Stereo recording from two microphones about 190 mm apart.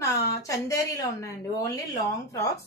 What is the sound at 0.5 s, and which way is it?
A woman's voice, 15° left (ahead or behind).